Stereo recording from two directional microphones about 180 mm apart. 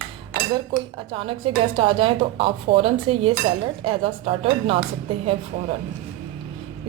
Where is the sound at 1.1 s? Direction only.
30° right (ahead or behind).